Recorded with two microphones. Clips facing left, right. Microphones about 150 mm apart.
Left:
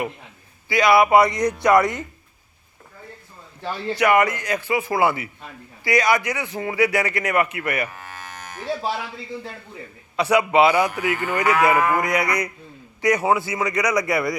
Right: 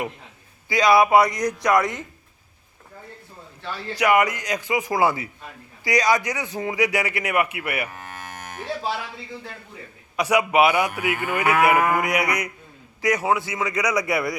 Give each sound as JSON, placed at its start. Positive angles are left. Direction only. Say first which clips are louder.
{"t": 0.7, "sound": "cattle", "louder": "left 1 dB", "side_deg": -15}
{"t": 1.1, "sound": "a man's voice", "louder": "left 2 dB", "side_deg": 0}
{"t": 3.9, "sound": "cattle", "louder": "left 1 dB", "side_deg": -15}
{"t": 8.1, "sound": "livestock", "louder": "right 1 dB", "side_deg": -50}
{"t": 10.2, "sound": "cattle", "louder": "left 2 dB", "side_deg": -10}
{"t": 13.0, "sound": "a man's voice", "louder": "left 2 dB", "side_deg": 0}